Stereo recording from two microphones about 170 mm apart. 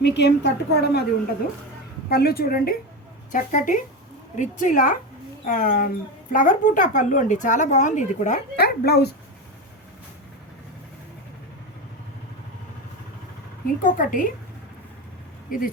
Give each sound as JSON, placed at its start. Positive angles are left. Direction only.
{"t": 0.0, "sound": "a woman's voice", "side_deg": 90}
{"t": 2.0, "sound": "a woman's voice", "side_deg": 65}
{"t": 3.3, "sound": "a woman's voice", "side_deg": 50}
{"t": 8.5, "sound": "speech", "side_deg": 65}
{"t": 13.8, "sound": "speech", "side_deg": 50}
{"t": 15.4, "sound": "speech", "side_deg": 55}